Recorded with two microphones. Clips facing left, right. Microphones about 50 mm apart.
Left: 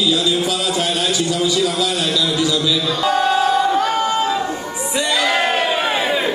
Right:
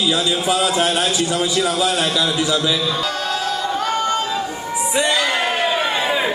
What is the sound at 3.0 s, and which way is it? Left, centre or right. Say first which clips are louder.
Music: left 7 dB; left.